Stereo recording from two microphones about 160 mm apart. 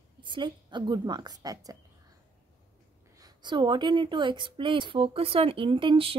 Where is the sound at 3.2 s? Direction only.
30° right (ahead or behind).